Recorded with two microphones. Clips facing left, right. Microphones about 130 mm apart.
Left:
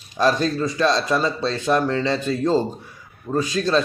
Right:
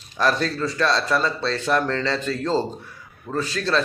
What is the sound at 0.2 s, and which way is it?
A man's voice, 15° left (ahead or behind).